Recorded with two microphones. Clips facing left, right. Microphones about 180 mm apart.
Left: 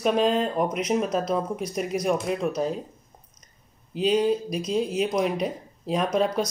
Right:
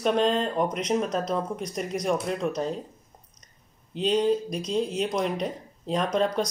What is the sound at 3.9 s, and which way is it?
Speech, 5° left (ahead or behind).